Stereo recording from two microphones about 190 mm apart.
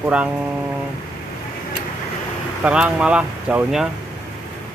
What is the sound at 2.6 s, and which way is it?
Speech, 5° right (ahead or behind).